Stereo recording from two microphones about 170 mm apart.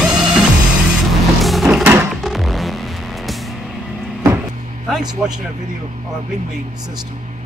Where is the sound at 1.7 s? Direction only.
15° right (ahead or behind).